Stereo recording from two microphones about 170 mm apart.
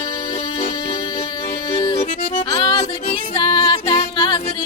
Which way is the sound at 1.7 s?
30° left (ahead or behind).